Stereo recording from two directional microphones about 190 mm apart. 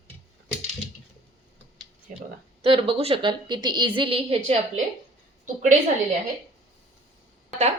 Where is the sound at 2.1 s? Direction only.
45° right (ahead or behind).